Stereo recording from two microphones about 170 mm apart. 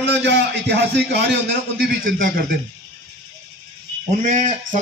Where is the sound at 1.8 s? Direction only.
55° right (ahead or behind).